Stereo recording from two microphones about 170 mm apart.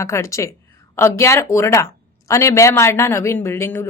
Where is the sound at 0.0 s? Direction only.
15° left (ahead or behind).